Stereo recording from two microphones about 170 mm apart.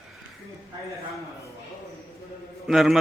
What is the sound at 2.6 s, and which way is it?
Speech, centre (ahead or behind).